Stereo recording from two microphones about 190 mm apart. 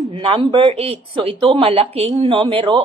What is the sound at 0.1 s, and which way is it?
Speech, 25° right (ahead or behind).